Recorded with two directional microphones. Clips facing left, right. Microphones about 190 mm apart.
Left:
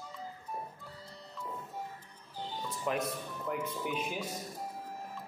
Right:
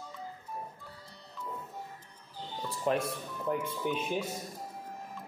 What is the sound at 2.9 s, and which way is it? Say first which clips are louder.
Speech: right 4 dB; 30° right (ahead or behind).